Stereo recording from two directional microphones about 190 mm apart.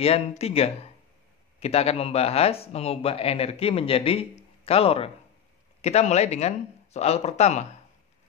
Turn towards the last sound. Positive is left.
turn(degrees=35)  # may be behind; listen again after turning